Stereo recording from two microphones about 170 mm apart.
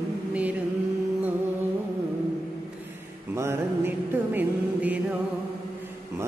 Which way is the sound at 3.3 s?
15° right (ahead or behind).